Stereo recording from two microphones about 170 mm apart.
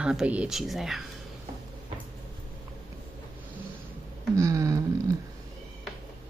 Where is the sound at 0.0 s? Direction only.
5° right (ahead or behind).